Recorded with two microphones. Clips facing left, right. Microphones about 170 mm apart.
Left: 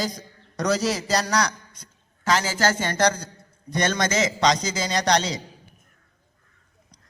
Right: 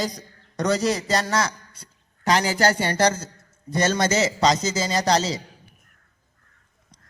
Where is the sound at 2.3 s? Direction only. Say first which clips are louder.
Right 2 dB; 40° right (ahead or behind).